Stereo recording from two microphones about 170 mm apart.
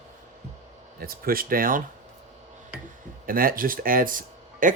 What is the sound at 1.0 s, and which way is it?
Speech, 60° right (ahead or behind).